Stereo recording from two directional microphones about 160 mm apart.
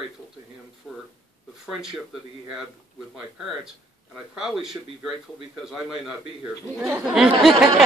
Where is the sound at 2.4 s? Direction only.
Centre (ahead or behind).